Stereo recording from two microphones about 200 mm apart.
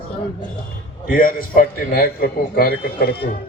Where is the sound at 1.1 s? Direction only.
45° left (ahead or behind).